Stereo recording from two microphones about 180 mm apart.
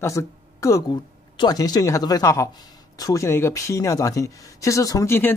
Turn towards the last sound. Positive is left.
turn(degrees=15)  # may be behind; listen again after turning